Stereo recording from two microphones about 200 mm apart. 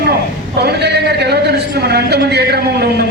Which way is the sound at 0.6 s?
55° right (ahead or behind).